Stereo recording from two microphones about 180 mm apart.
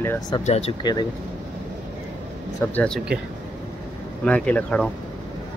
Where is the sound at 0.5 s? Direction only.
35° left (ahead or behind).